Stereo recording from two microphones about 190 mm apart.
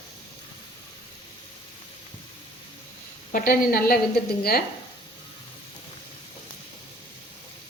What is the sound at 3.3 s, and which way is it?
A woman's voice, 45° left (ahead or behind).